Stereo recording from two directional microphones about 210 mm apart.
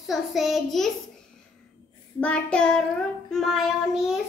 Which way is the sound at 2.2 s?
5° left (ahead or behind).